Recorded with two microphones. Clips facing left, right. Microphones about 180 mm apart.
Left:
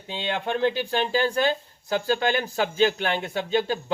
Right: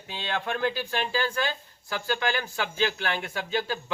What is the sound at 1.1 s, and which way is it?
Speech, 35° left (ahead or behind).